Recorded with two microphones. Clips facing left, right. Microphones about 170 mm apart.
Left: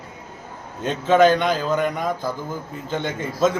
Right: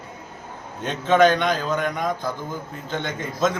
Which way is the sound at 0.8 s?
5° left (ahead or behind).